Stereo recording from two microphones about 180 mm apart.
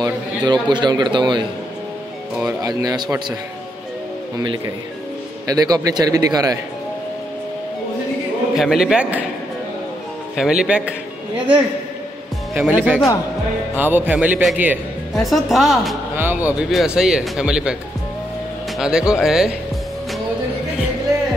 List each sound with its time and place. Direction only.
0.0 s a man's voice: 25° right (ahead or behind)
2.4 s a man's voice: 20° right (ahead or behind)
5.5 s a man's voice: 20° right (ahead or behind)
8.5 s a man's voice: centre (ahead or behind)
10.3 s a man's voice: 5° right (ahead or behind)
12.5 s a man's voice: 5° right (ahead or behind)
18.8 s a man's voice: 5° right (ahead or behind)